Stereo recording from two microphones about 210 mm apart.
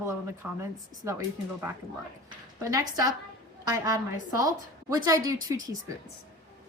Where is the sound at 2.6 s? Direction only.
15° right (ahead or behind).